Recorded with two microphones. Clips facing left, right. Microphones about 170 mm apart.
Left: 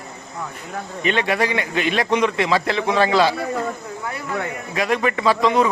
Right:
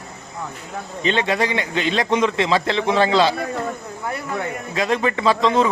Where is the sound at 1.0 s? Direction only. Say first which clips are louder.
Even; 25° right (ahead or behind).